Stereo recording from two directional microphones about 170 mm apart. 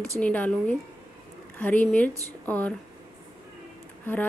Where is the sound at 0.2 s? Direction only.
5° left (ahead or behind).